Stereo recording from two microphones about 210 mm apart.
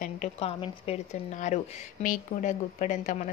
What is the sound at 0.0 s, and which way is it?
Speech, 35° left (ahead or behind).